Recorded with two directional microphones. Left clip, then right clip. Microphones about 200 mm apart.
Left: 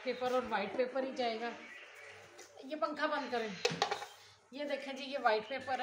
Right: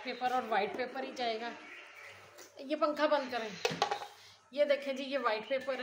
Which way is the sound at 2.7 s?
50° right (ahead or behind).